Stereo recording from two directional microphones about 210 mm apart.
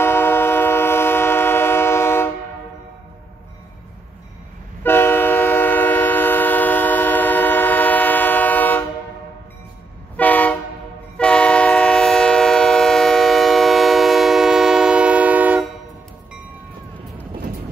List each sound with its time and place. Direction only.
0.0 s train: 10° left (ahead or behind)
4.8 s train: 10° left (ahead or behind)
10.1 s train: 5° left (ahead or behind)